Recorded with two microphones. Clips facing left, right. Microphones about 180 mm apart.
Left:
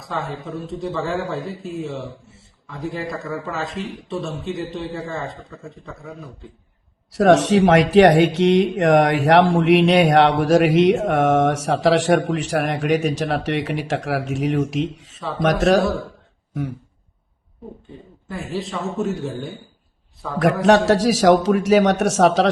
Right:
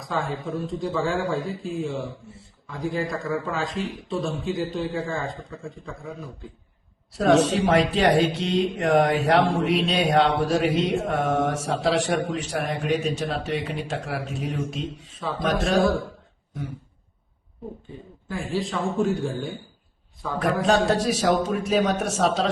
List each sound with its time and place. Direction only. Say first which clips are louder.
0.0 s a man's voice: even; centre (ahead or behind)
7.1 s speech: left 5 dB; 90° left
18.3 s a man's voice: even; centre (ahead or behind)
20.4 s speech: left 6 dB; 85° left